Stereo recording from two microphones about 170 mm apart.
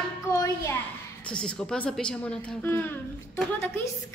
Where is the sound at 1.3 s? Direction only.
5° left (ahead or behind).